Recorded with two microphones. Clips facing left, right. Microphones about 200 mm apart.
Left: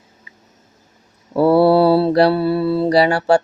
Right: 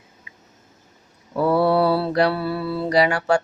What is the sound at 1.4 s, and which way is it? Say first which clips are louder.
Mantra: left 6 dB; 30° left (ahead or behind).